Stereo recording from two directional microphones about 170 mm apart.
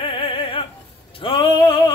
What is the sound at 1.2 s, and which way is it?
Male singing, 30° left (ahead or behind).